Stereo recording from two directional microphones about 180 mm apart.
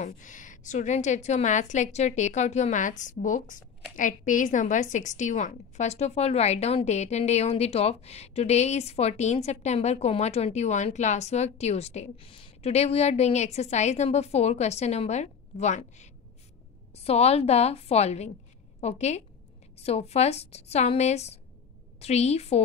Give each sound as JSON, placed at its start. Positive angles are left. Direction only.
{"t": 0.0, "sound": "a woman's voice", "side_deg": 45}